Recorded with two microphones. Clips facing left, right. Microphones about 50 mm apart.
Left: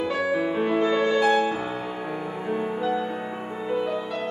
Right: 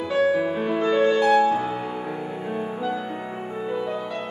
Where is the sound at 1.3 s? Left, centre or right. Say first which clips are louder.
Right 4 dB; centre.